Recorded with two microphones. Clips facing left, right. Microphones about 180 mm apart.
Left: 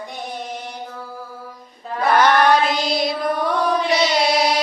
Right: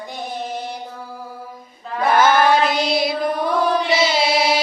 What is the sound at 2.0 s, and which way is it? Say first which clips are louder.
Mantra: even; centre (ahead or behind).